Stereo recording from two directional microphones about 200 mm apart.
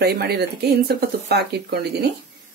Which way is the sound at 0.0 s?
55° right (ahead or behind).